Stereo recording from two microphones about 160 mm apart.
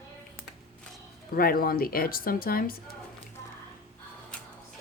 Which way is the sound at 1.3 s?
65° left (ahead or behind).